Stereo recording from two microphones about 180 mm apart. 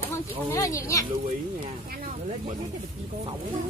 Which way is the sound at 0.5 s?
15° left (ahead or behind).